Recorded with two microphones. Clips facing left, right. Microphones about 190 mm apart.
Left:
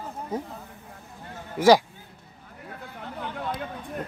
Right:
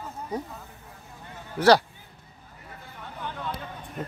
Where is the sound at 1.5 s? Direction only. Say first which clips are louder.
Left 1 dB; 10° left (ahead or behind).